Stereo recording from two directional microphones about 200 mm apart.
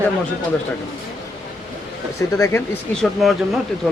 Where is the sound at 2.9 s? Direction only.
Centre (ahead or behind).